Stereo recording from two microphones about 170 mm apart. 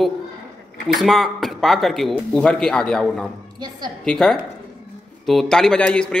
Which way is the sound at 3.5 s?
25° right (ahead or behind).